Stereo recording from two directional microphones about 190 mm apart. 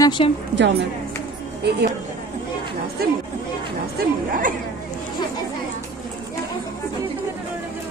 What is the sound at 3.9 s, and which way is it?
Speech, 45° right (ahead or behind).